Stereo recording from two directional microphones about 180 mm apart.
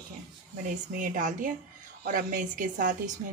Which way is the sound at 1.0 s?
45° right (ahead or behind).